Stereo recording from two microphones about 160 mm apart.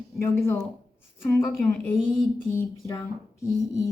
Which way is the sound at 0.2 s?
15° left (ahead or behind).